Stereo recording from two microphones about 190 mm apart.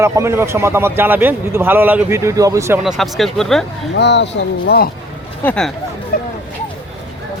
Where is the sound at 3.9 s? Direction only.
65° left (ahead or behind).